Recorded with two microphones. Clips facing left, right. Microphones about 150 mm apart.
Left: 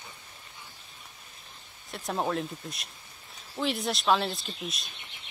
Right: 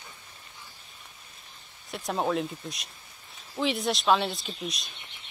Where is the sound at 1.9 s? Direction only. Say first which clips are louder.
Right 2 dB; centre (ahead or behind).